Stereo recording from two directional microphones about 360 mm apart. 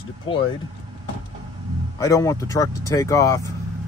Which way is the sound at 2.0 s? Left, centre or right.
Centre.